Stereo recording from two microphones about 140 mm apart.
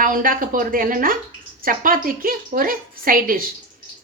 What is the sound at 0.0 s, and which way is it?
A woman's voice, 75° right (ahead or behind).